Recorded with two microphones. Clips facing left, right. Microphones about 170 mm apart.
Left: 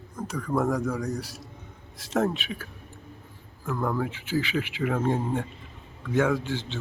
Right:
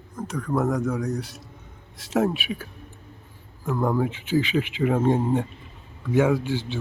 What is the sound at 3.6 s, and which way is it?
A man's voice, 20° right (ahead or behind).